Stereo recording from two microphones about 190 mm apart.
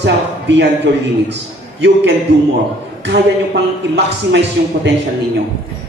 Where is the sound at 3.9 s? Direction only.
65° right (ahead or behind).